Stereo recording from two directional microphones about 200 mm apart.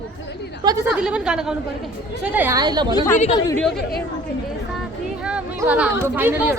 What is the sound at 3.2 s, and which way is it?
Speech, 30° left (ahead or behind).